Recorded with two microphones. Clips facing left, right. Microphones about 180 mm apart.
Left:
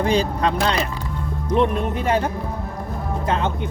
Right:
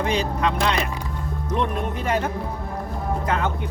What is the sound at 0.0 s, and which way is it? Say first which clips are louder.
Speech: left 3 dB; 35° left (ahead or behind).